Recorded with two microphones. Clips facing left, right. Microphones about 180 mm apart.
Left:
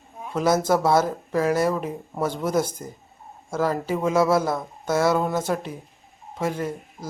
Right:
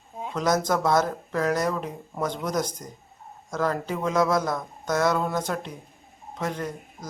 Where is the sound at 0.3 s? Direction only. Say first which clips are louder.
Left 4 dB; 5° left (ahead or behind).